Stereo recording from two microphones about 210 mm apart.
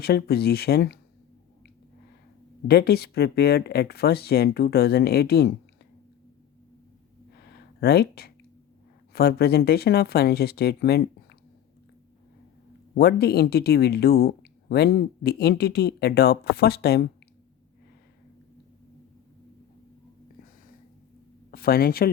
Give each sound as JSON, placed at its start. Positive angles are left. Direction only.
{"t": 0.0, "sound": "speech", "side_deg": 50}
{"t": 2.6, "sound": "speech", "side_deg": 50}
{"t": 7.3, "sound": "a sound", "side_deg": 50}
{"t": 9.1, "sound": "speech", "side_deg": 50}
{"t": 12.9, "sound": "speech", "side_deg": 50}
{"t": 21.5, "sound": "speech", "side_deg": 45}